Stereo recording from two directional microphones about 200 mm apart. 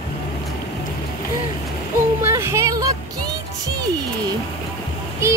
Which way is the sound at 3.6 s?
20° right (ahead or behind).